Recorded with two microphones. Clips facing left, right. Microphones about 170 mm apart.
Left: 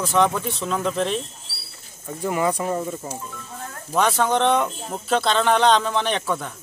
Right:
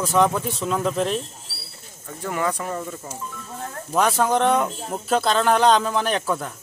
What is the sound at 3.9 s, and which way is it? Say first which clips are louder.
Speech: even; centre (ahead or behind).